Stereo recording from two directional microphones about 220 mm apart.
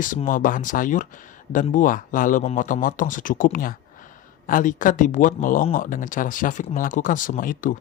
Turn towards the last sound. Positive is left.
turn(degrees=40)  # may be behind; listen again after turning